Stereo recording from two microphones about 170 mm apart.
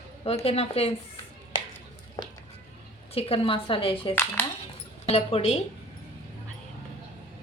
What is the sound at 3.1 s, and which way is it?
A woman's voice, 35° left (ahead or behind).